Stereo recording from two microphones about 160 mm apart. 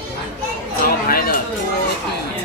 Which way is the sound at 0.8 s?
70° left (ahead or behind).